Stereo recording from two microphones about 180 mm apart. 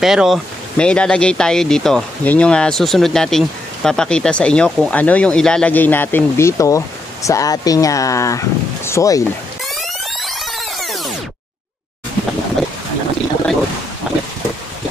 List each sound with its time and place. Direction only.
0.0 s speech: centre (ahead or behind); by 9.2 s 15° left (ahead or behind)
9.8 s music: centre (ahead or behind)
14.1 s a sound: 5° right (ahead or behind)